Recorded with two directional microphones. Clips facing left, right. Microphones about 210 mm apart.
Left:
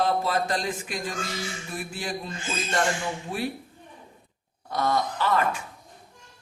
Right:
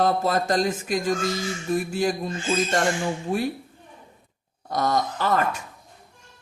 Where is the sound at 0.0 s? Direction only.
45° right (ahead or behind).